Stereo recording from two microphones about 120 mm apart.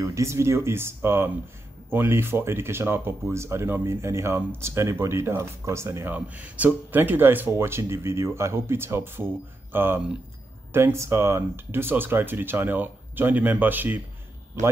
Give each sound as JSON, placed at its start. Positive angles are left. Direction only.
{"t": 0.0, "sound": "speech", "side_deg": -25}